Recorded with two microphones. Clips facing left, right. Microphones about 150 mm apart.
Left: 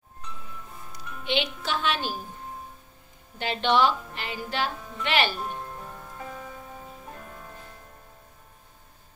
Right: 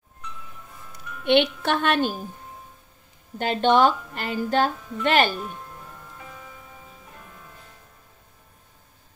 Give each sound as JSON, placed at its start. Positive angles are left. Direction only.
{"t": 0.9, "sound": "speech", "side_deg": -55}
{"t": 3.3, "sound": "a woman's voice", "side_deg": -45}
{"t": 6.1, "sound": "music", "side_deg": 45}